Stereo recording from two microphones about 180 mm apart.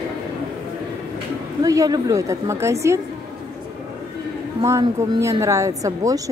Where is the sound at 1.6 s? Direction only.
20° right (ahead or behind).